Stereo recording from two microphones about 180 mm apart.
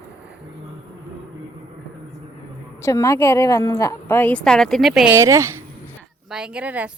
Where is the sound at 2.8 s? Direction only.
15° left (ahead or behind); by 5.1 s centre (ahead or behind).